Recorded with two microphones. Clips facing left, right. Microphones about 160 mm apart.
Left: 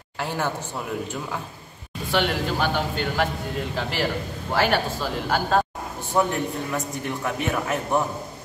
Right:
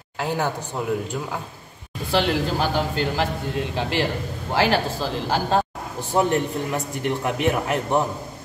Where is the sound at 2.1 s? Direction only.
35° right (ahead or behind).